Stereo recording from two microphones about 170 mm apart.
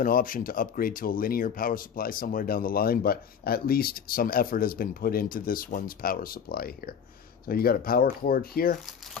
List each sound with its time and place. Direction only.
0.0 s speech: 55° left (ahead or behind)